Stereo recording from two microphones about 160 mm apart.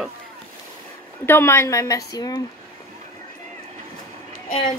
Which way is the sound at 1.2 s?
15° left (ahead or behind).